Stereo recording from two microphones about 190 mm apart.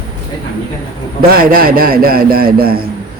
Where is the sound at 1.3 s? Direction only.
50° right (ahead or behind).